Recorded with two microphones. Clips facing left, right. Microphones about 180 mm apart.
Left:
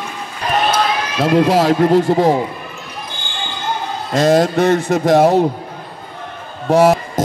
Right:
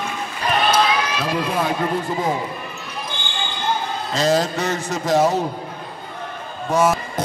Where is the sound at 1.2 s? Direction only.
80° left.